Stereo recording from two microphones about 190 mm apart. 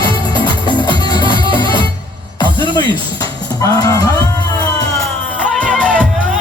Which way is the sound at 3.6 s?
20° left (ahead or behind).